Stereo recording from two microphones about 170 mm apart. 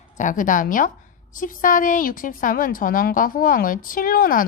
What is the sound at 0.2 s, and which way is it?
A woman's voice, 50° left (ahead or behind).